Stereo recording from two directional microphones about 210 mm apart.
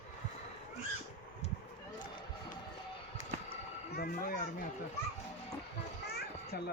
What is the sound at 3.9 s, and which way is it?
Children playing, 45° left (ahead or behind).